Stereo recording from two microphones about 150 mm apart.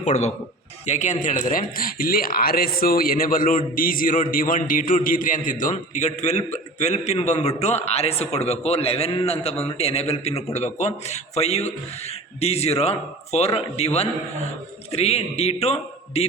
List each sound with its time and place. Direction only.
0.0 s a man's voice: 50° left (ahead or behind)